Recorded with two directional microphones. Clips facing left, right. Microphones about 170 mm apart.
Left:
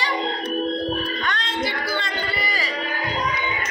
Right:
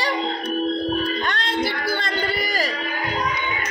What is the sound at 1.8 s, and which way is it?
Music, 40° right (ahead or behind).